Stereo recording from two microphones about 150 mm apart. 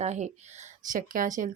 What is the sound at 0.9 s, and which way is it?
Speech, 65° right (ahead or behind).